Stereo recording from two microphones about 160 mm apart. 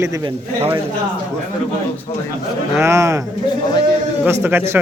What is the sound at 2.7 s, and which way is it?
Speech, 20° right (ahead or behind).